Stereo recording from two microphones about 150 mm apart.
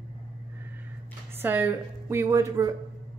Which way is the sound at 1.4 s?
15° right (ahead or behind).